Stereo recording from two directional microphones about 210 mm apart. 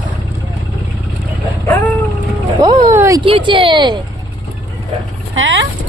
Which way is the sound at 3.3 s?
25° right (ahead or behind).